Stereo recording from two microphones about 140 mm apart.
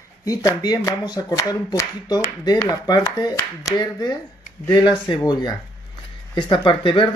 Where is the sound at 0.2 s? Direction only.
25° left (ahead or behind).